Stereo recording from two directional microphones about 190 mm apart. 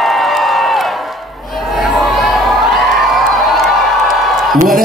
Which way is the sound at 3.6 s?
Centre (ahead or behind).